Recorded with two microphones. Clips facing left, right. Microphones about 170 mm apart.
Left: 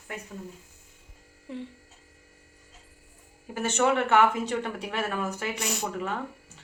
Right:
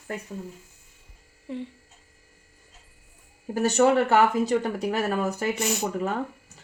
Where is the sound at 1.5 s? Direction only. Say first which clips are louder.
Right 4 dB; centre (ahead or behind).